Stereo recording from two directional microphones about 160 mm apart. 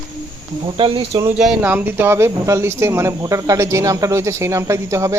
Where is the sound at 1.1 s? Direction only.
20° right (ahead or behind).